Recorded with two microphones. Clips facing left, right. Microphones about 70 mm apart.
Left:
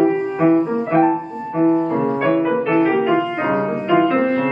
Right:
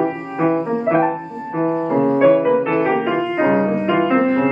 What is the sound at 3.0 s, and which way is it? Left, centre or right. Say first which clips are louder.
Music: even; right.